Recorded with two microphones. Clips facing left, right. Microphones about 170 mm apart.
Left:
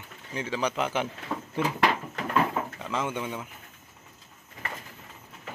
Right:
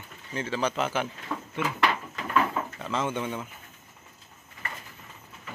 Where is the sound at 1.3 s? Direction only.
15° left (ahead or behind).